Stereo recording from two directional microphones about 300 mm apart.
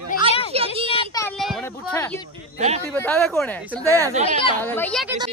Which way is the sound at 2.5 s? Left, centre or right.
Right.